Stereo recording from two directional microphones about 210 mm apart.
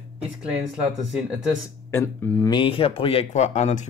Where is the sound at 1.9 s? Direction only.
10° left (ahead or behind).